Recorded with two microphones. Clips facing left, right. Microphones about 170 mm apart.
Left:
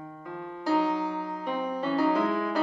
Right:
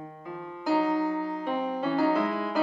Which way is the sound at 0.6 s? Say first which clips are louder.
Right 1 dB; 5° right (ahead or behind).